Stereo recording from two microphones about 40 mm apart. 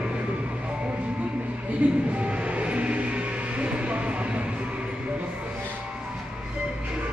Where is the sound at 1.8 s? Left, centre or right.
Right.